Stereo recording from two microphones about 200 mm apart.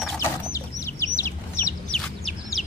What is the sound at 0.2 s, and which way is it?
Chicken, 15° left (ahead or behind).